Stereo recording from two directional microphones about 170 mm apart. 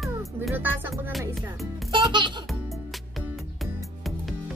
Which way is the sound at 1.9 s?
25° right (ahead or behind).